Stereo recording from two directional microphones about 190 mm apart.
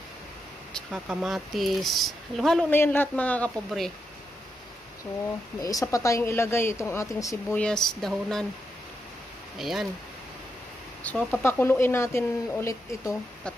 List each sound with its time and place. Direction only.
0.7 s speech: centre (ahead or behind)
5.6 s speech: 15° left (ahead or behind)
7.6 s speech: 5° left (ahead or behind)
9.6 s speech: centre (ahead or behind)
11.1 s speech: 5° left (ahead or behind)